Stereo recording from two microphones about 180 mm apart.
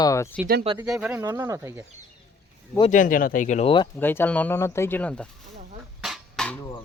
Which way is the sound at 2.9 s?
45° left (ahead or behind).